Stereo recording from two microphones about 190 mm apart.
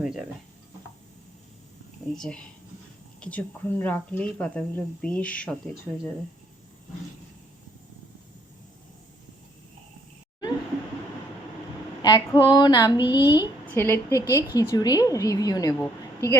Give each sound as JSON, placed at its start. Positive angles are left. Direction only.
{"t": 0.0, "sound": "speech", "side_deg": -5}
{"t": 2.1, "sound": "speech", "side_deg": 5}
{"t": 12.0, "sound": "a woman's voice", "side_deg": 20}
{"t": 13.2, "sound": "a sound", "side_deg": -10}
{"t": 13.7, "sound": "a woman's voice", "side_deg": 10}